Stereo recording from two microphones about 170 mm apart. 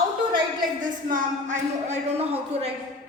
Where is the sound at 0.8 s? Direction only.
50° right (ahead or behind).